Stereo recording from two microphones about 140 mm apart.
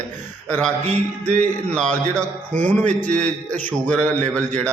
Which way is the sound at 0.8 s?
55° right (ahead or behind).